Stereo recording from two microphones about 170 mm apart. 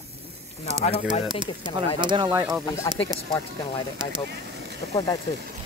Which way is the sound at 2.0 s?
25° right (ahead or behind).